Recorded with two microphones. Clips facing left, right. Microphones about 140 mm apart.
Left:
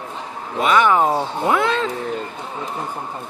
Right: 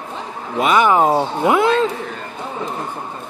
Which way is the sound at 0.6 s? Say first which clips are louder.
Right 2 dB; 15° right (ahead or behind).